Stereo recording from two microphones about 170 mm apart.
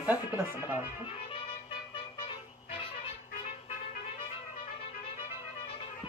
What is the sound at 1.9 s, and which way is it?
Vehicle, 30° left (ahead or behind).